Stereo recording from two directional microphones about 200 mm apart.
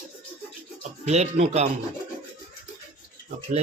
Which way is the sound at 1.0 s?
35° right (ahead or behind).